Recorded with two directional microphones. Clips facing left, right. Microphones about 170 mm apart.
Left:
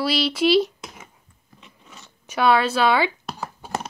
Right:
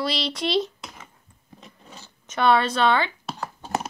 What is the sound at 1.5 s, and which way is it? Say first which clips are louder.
Scissors: right 2 dB; 35° right (ahead or behind).